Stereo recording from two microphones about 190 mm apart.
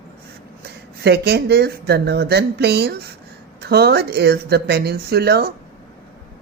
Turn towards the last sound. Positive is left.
turn(degrees=-60)  # may be behind; listen again after turning